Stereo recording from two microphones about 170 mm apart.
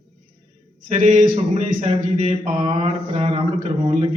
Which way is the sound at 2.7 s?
30° right (ahead or behind).